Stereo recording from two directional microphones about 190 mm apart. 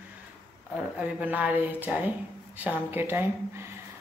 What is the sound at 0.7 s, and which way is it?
Speech, 5° right (ahead or behind).